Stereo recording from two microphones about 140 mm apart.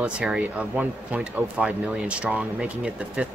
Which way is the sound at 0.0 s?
5° right (ahead or behind).